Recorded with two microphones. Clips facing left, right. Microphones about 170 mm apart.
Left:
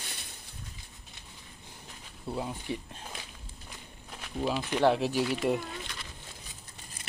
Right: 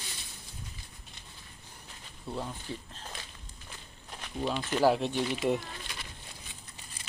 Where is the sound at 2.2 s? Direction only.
10° left (ahead or behind).